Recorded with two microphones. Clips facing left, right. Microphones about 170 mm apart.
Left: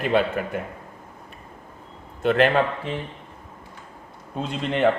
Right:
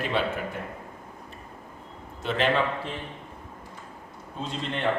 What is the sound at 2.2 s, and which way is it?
Speech, 55° left (ahead or behind).